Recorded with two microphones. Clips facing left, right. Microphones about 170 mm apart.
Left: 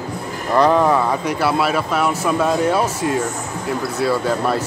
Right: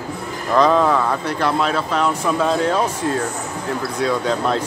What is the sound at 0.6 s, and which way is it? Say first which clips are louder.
Speech: left 1 dB; 15° left (ahead or behind).